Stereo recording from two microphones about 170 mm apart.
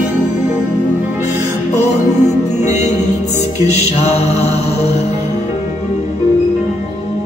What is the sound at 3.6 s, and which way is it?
Mantra, 40° left (ahead or behind).